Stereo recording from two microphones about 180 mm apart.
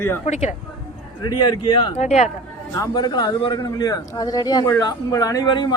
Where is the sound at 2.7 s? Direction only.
20° left (ahead or behind).